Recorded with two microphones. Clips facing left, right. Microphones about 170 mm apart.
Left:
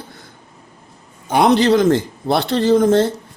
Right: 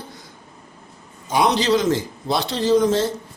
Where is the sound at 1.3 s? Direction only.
55° left (ahead or behind).